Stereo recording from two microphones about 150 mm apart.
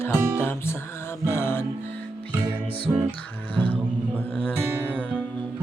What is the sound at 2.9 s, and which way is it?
Music, 20° right (ahead or behind).